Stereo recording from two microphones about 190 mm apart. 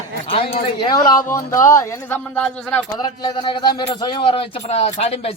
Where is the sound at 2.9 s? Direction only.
25° left (ahead or behind).